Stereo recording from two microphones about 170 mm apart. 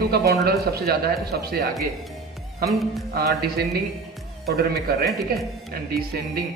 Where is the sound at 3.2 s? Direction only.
65° right (ahead or behind).